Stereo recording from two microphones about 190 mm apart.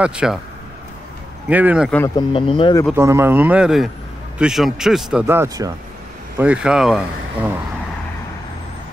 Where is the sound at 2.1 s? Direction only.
25° left (ahead or behind).